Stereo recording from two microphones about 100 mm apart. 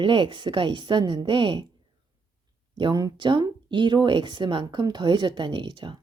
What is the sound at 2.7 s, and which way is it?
A woman's voice, 55° right (ahead or behind).